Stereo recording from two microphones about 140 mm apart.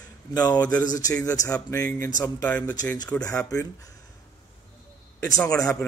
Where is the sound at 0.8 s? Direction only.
25° left (ahead or behind).